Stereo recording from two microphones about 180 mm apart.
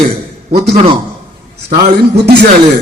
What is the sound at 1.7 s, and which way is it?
Speech, 60° right (ahead or behind).